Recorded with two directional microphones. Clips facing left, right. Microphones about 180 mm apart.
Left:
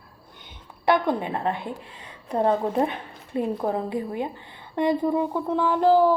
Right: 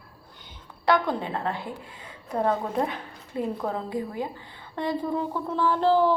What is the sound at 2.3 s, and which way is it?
A woman's voice, 30° left (ahead or behind).